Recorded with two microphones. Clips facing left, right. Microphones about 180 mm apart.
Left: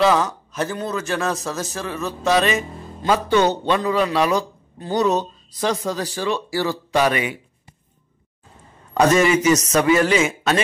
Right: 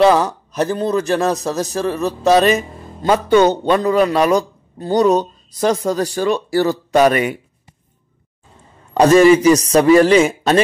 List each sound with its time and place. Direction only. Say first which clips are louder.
0.0 s a man's voice: right 5 dB; 40° right (ahead or behind)
8.9 s a man's voice: right 7 dB; 30° right (ahead or behind)